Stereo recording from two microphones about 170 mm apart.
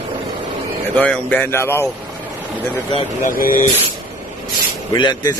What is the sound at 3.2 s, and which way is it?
Speech, 55° left (ahead or behind).